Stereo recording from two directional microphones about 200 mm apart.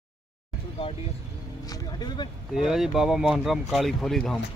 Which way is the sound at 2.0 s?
20° left (ahead or behind).